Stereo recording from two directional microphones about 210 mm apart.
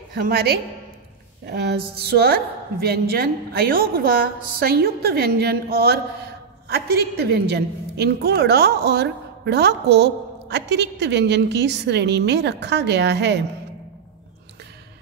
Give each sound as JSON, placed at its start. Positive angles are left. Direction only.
{"t": 0.1, "sound": "a woman's voice", "side_deg": -50}